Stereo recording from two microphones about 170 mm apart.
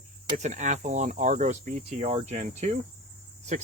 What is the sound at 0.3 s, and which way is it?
Speech, 45° right (ahead or behind).